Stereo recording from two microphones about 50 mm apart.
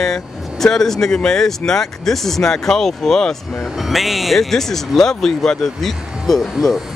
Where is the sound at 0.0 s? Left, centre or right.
Centre.